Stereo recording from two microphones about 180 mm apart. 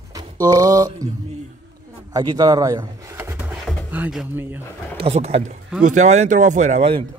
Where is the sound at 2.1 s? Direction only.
20° right (ahead or behind).